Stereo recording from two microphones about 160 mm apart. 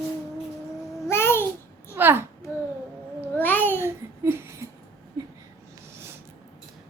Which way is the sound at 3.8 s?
15° right (ahead or behind).